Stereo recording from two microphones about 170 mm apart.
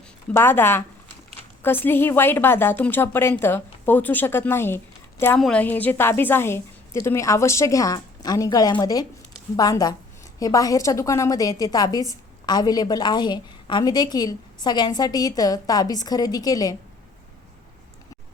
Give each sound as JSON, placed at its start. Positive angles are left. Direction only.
{"t": 0.3, "sound": "a woman's voice", "side_deg": 15}